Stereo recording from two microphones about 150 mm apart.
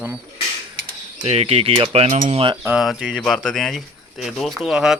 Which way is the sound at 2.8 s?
Centre (ahead or behind).